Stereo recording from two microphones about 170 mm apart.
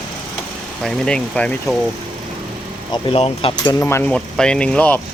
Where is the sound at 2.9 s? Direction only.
35° left (ahead or behind).